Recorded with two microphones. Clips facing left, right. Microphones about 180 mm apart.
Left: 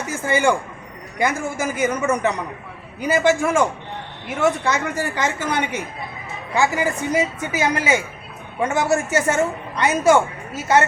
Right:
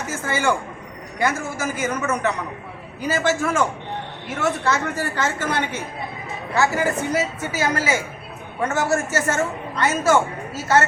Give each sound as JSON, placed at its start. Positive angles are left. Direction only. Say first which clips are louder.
{"t": 0.3, "sound": "a woman's voice", "louder": "left 4 dB", "side_deg": 15}